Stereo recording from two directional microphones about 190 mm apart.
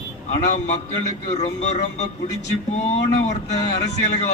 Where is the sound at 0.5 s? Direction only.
35° left (ahead or behind).